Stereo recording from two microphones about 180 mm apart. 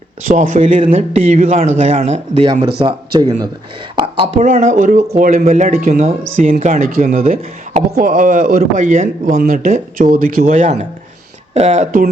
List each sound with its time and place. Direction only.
0.3 s speech: 45° right (ahead or behind)
6.5 s speech: 40° right (ahead or behind)